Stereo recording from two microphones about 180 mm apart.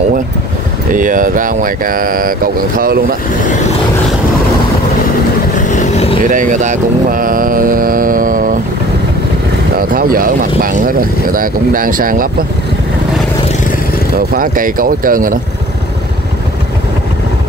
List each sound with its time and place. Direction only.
0.9 s speech: 45° right (ahead or behind)
5.7 s vehicle: 40° left (ahead or behind)
6.2 s speech: 45° right (ahead or behind)
9.8 s speech: 55° right (ahead or behind)
14.3 s speech: 50° right (ahead or behind)